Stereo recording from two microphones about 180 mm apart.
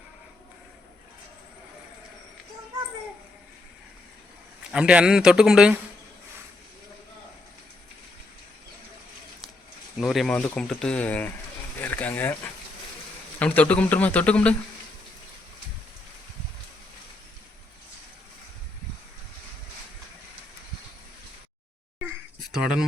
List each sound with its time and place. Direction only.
4.7 s speech: 5° right (ahead or behind)
10.0 s speech: centre (ahead or behind)
13.4 s speech: 10° left (ahead or behind)
22.5 s a sound: 5° right (ahead or behind)